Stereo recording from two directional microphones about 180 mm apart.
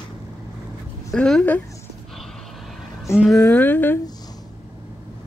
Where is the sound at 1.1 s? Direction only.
5° left (ahead or behind).